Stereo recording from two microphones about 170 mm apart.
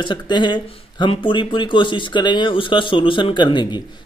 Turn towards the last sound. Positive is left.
turn(degrees=25)  # may be behind; listen again after turning